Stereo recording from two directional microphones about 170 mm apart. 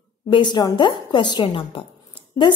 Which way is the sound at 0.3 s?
25° left (ahead or behind).